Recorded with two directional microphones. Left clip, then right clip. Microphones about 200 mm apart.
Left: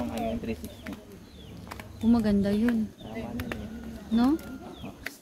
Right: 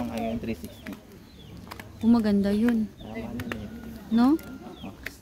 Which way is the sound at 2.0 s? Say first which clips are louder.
Right 2 dB; 15° right (ahead or behind).